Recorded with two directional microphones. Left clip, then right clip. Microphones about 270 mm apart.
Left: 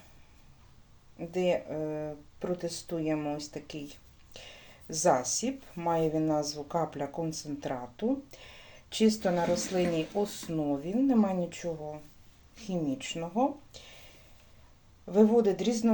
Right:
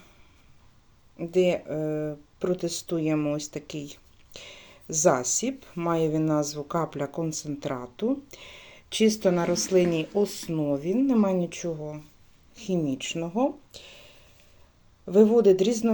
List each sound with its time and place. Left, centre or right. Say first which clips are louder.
1.2 s speech: right 5 dB; right
15.1 s speech: right 6 dB; right